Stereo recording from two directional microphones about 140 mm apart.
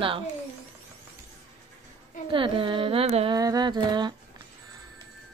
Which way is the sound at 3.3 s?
30° right (ahead or behind).